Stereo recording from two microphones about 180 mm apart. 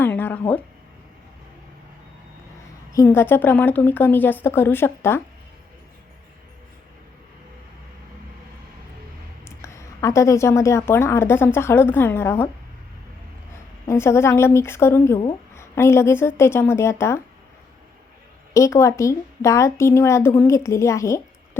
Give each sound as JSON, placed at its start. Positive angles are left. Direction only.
{"t": 0.0, "sound": "a sound", "side_deg": 10}
{"t": 2.9, "sound": "a woman's voice", "side_deg": 15}
{"t": 9.4, "sound": "a woman's voice", "side_deg": 15}
{"t": 13.8, "sound": "a woman's voice", "side_deg": 15}
{"t": 18.5, "sound": "a woman's voice", "side_deg": 15}